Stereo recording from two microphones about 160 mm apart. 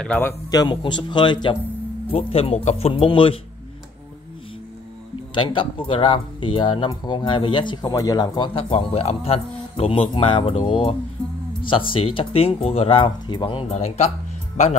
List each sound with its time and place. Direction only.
0.0 s a man's voice: 10° left (ahead or behind)
0.5 s a man's voice: 25° left (ahead or behind)
5.3 s speech: 30° left (ahead or behind)